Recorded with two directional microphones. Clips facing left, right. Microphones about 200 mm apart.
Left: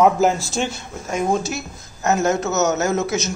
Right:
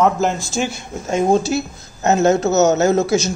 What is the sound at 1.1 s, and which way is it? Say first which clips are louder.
A woman's voice: right 5 dB; 30° right (ahead or behind).